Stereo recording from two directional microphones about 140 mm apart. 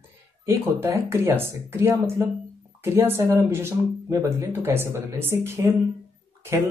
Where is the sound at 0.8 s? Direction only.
20° right (ahead or behind).